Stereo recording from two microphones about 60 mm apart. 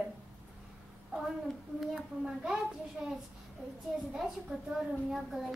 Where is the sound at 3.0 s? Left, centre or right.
Centre.